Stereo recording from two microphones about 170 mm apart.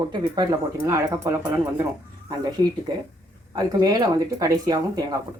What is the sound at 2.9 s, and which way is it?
Speech, 25° right (ahead or behind).